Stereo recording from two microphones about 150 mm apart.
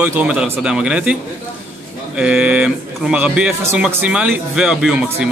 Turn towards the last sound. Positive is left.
turn(degrees=-5)  # may be behind; listen again after turning